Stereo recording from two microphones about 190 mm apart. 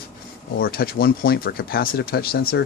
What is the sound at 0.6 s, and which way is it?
Speech, 50° left (ahead or behind).